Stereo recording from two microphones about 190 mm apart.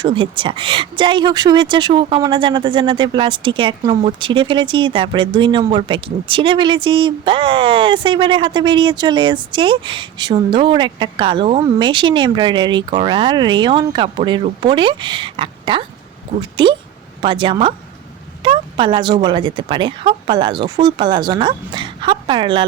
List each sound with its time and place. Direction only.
0.0 s speech: 25° right (ahead or behind)